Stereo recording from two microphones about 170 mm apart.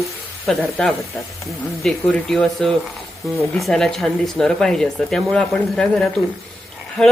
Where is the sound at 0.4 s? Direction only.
Centre (ahead or behind).